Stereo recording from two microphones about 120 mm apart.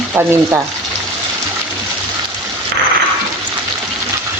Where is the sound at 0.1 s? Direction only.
20° right (ahead or behind).